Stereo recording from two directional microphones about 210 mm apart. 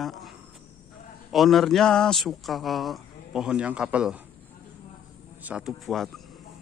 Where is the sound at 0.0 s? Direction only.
Centre (ahead or behind).